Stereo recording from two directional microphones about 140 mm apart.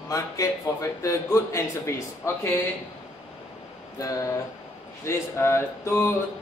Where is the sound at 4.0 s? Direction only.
25° left (ahead or behind).